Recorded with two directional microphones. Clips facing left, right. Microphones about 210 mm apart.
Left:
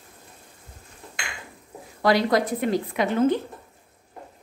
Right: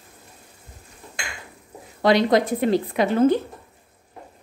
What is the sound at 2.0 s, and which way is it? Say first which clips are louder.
A woman's voice: right 3 dB; 20° right (ahead or behind).